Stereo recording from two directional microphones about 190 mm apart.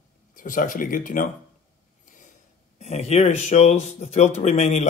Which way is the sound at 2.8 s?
35° left (ahead or behind).